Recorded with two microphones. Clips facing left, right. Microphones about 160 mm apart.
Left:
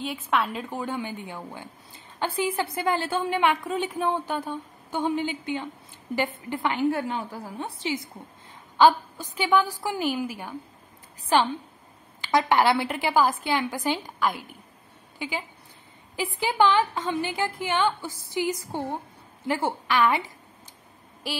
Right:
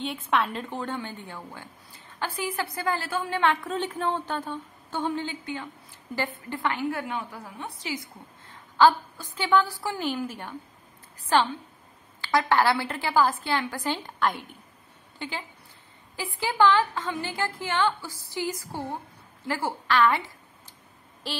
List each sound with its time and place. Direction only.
0.0 s a woman's voice: centre (ahead or behind)
14.0 s a woman's voice: 5° left (ahead or behind)